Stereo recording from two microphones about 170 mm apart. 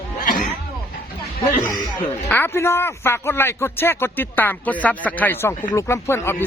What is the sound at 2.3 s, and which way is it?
A man's voice, 15° left (ahead or behind).